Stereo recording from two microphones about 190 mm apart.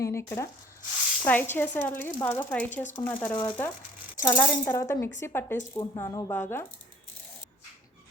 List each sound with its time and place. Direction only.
0.0 s speech: 15° left (ahead or behind)